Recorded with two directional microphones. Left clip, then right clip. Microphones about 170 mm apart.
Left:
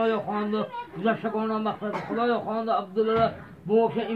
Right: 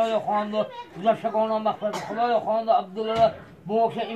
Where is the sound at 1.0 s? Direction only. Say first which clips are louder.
Right 5 dB; 15° right (ahead or behind).